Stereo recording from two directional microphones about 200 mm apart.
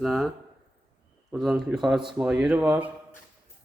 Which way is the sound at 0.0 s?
Centre (ahead or behind).